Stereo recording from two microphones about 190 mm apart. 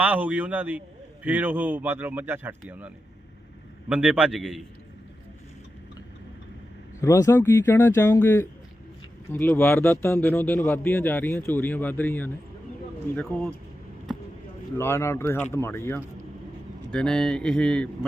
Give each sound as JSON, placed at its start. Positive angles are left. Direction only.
{"t": 0.0, "sound": "speech", "side_deg": -10}
{"t": 7.0, "sound": "speech", "side_deg": 15}
{"t": 14.8, "sound": "speech", "side_deg": 15}